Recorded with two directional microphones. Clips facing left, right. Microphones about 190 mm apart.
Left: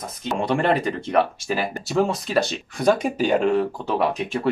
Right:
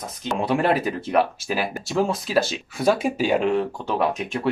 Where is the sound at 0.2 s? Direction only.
Centre (ahead or behind).